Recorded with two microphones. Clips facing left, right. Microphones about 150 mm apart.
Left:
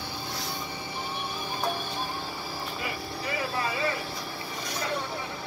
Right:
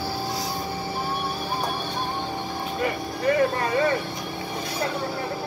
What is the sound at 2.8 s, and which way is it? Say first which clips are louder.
Vehicle: right 13 dB; 55° right (ahead or behind).